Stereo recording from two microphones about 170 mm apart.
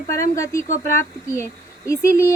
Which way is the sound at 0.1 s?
20° left (ahead or behind).